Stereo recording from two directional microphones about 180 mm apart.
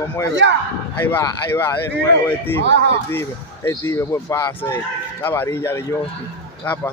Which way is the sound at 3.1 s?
15° left (ahead or behind).